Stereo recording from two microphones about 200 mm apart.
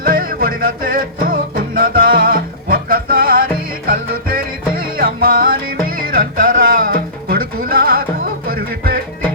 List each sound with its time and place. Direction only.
0.1 s music: 45° right (ahead or behind)